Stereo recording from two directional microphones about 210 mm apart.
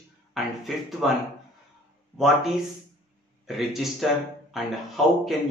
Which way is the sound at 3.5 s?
Centre (ahead or behind).